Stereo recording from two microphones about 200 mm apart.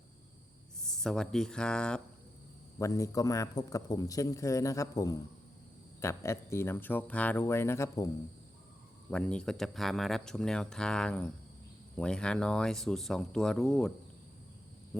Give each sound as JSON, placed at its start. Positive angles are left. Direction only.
{"t": 0.9, "sound": "speech", "side_deg": 5}
{"t": 2.7, "sound": "a man's voice", "side_deg": 15}